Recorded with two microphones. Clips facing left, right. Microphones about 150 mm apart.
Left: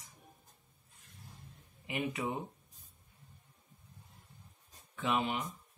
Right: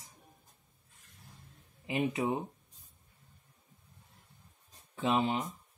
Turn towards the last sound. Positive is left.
turn(degrees=-30)  # may be behind; listen again after turning